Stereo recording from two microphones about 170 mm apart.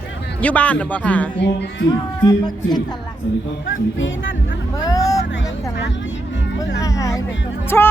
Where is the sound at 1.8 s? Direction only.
25° left (ahead or behind).